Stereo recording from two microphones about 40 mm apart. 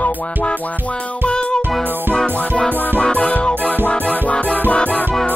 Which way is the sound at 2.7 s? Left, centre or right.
Left.